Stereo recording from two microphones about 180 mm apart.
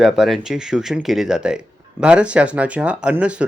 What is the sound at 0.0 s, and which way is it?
Speech, centre (ahead or behind).